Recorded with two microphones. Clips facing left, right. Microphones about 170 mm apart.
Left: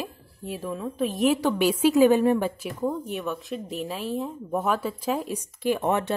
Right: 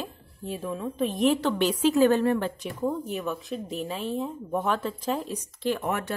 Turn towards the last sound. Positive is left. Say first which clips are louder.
# left 5 dB
turn(degrees=25)  # may be behind; listen again after turning